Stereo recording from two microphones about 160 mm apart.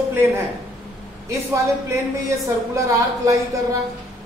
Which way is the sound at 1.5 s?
20° right (ahead or behind).